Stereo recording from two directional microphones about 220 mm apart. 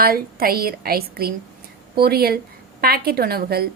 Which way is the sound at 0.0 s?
40° right (ahead or behind).